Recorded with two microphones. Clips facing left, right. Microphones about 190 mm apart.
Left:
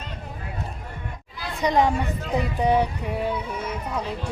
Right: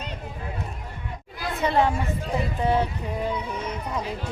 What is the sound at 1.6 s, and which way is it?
Speech, 15° left (ahead or behind).